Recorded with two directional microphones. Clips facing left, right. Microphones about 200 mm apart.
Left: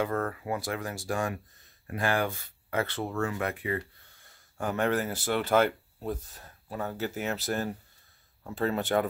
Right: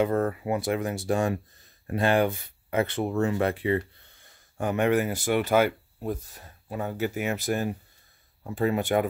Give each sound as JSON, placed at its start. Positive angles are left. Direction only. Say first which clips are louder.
{"t": 0.0, "sound": "speech", "louder": "right 6 dB", "side_deg": -20}
{"t": 4.6, "sound": "speech", "louder": "right 4 dB", "side_deg": -15}